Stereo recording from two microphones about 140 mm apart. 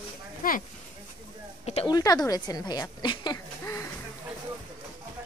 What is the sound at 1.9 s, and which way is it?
A woman's voice, 25° left (ahead or behind).